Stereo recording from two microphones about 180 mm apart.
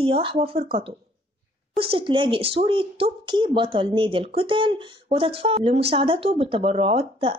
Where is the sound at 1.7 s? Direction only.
30° right (ahead or behind).